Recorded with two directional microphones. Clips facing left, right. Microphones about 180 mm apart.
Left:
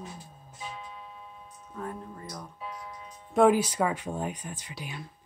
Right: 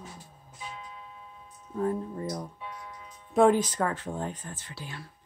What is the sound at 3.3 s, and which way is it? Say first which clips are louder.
A woman's voice: even; 5° left (ahead or behind).